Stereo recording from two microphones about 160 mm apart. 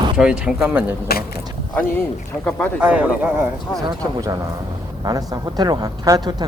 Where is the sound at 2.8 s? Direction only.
10° right (ahead or behind).